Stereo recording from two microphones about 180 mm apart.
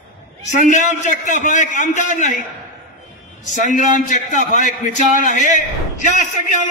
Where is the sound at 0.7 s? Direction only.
40° left (ahead or behind).